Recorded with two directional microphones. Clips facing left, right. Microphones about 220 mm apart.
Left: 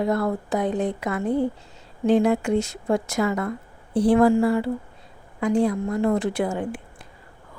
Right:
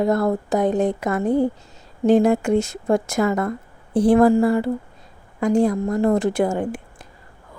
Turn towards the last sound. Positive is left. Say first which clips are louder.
# right 4 dB
turn(degrees=-45)  # may be behind; listen again after turning